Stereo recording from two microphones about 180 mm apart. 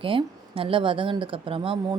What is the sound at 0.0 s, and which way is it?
A woman's voice, 30° right (ahead or behind).